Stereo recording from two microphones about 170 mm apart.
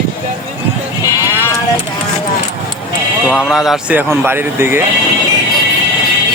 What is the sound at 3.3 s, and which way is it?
Speech, 5° left (ahead or behind).